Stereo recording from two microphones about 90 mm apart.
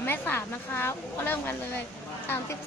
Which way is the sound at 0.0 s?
25° left (ahead or behind).